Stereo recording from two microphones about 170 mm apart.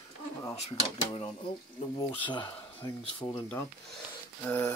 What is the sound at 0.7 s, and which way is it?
Speech, 35° left (ahead or behind).